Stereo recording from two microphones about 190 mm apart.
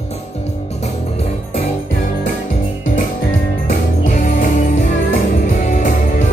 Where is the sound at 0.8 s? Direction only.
35° left (ahead or behind).